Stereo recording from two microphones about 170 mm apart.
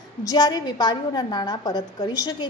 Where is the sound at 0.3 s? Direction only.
25° left (ahead or behind).